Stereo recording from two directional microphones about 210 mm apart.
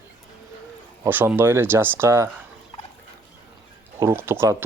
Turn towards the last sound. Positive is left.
turn(degrees=-10)  # may be behind; listen again after turning